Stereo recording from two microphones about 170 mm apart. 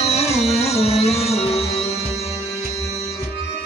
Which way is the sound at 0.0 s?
40° left (ahead or behind).